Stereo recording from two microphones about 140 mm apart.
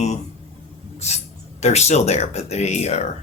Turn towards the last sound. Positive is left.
turn(degrees=50)  # may be behind; listen again after turning